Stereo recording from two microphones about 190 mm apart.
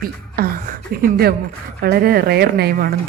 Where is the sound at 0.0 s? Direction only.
50° right (ahead or behind).